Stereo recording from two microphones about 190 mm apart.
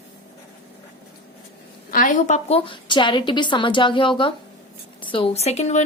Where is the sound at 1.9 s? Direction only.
45° left (ahead or behind).